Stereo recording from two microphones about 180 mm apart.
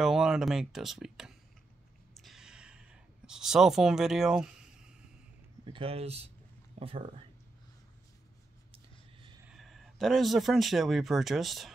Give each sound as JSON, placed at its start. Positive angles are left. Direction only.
{"t": 0.0, "sound": "speech", "side_deg": -5}
{"t": 2.1, "sound": "a sound", "side_deg": 0}
{"t": 5.7, "sound": "speech", "side_deg": -30}
{"t": 9.5, "sound": "speech", "side_deg": 0}